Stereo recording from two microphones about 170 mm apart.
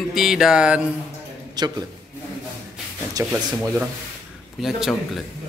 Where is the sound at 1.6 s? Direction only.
25° right (ahead or behind).